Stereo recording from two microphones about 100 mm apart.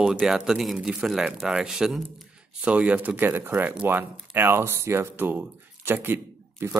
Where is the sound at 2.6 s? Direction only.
15° right (ahead or behind).